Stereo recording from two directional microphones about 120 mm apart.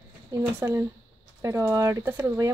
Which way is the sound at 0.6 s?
25° right (ahead or behind).